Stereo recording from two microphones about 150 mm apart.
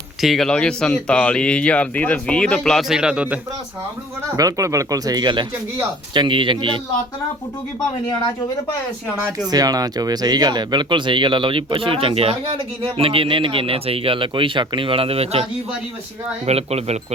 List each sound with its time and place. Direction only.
0.2 s speech: centre (ahead or behind)
4.4 s speech: 20° right (ahead or behind)
9.5 s speech: 25° right (ahead or behind); by 15.4 s 40° right (ahead or behind)
16.5 s speech: 45° right (ahead or behind)